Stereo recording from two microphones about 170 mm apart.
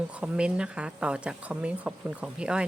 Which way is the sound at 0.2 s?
5° right (ahead or behind).